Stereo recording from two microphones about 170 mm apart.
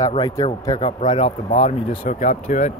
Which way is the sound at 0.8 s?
40° left (ahead or behind).